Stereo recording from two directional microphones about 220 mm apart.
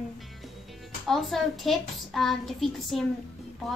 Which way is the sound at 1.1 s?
Centre (ahead or behind).